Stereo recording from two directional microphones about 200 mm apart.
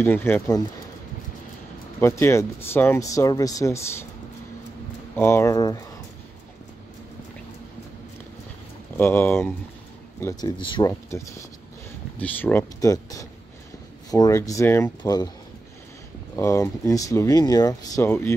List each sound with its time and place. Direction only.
0.0 s speech: 10° left (ahead or behind)
2.0 s speech: 10° left (ahead or behind)
5.1 s speech: 10° left (ahead or behind)
8.9 s speech: 10° left (ahead or behind)
10.2 s speech: 20° left (ahead or behind)
16.3 s speech: 15° left (ahead or behind)